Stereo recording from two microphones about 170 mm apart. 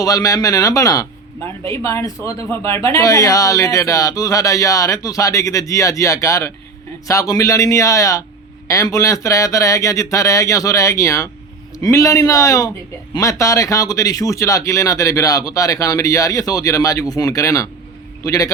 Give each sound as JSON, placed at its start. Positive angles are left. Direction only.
{"t": 0.0, "sound": "speech", "side_deg": 20}